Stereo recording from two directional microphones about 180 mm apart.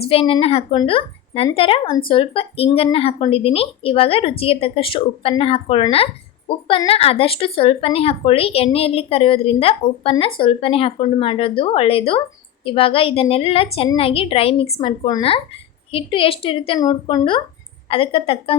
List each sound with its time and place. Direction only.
0.0 s a woman's voice: 30° left (ahead or behind)